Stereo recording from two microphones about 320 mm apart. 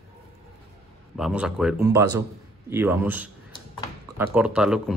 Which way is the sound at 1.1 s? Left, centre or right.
Centre.